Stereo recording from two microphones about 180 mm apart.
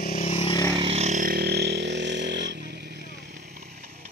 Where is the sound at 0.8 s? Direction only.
35° right (ahead or behind); by 3.4 s 70° right (ahead or behind).